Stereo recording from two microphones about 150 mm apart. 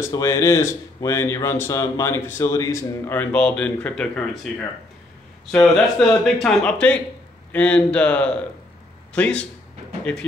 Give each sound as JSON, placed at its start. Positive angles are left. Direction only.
{"t": 0.1, "sound": "speech", "side_deg": 20}
{"t": 3.2, "sound": "speech", "side_deg": 10}
{"t": 5.5, "sound": "speech", "side_deg": 5}